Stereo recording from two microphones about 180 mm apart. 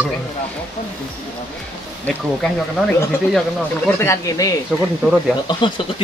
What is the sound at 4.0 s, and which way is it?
Speech, 15° left (ahead or behind).